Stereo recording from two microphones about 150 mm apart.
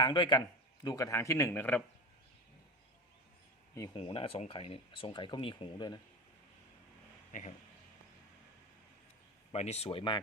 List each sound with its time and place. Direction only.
0.0 s speech: 30° left (ahead or behind); by 1.8 s 10° left (ahead or behind)
3.9 s speech: 35° left (ahead or behind)
9.5 s speech: 45° left (ahead or behind)